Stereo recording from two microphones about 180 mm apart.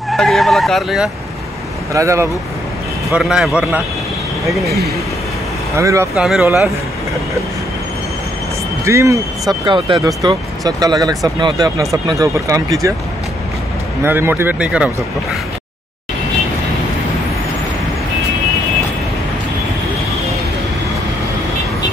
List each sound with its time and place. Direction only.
0.1 s speech: centre (ahead or behind)
2.0 s speech: 15° right (ahead or behind)
3.1 s speech: 5° right (ahead or behind)
5.8 s speech: 15° right (ahead or behind)
6.1 s speech: 5° right (ahead or behind)
8.8 s speech: 15° right (ahead or behind)
14.0 s speech: 10° right (ahead or behind)